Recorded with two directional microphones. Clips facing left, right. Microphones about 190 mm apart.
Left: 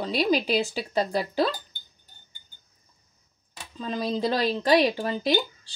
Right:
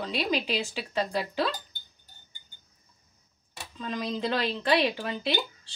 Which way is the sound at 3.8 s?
35° left (ahead or behind).